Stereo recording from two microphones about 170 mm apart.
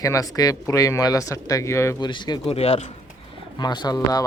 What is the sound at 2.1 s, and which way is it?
Speech, 25° left (ahead or behind).